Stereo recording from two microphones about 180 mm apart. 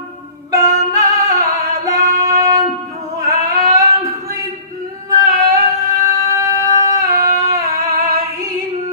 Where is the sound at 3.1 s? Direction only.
20° right (ahead or behind).